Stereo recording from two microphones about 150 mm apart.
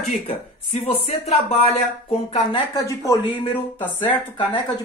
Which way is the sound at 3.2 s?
40° left (ahead or behind).